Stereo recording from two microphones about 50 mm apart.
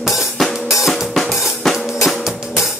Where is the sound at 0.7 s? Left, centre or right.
Centre.